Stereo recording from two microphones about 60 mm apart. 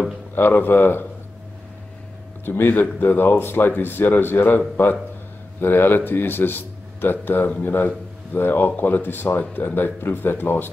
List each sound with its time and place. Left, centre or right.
0.3 s speech: left
2.4 s speech: left